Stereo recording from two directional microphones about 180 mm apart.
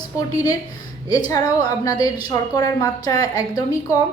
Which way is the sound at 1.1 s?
20° left (ahead or behind).